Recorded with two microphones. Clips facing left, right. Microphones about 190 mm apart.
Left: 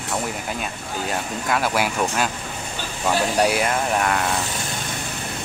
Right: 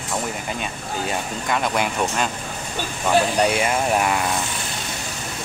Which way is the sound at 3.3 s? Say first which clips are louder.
Even; centre (ahead or behind).